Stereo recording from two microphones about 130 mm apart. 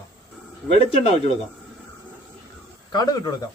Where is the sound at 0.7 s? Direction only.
55° left (ahead or behind).